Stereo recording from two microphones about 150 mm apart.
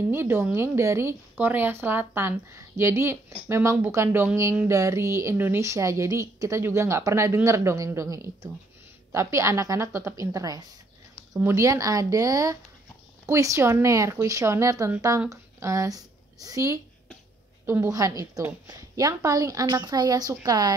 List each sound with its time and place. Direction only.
0.1 s speech: 15° right (ahead or behind)